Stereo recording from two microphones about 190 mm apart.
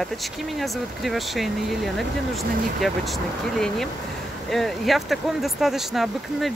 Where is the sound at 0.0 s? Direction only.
Centre (ahead or behind).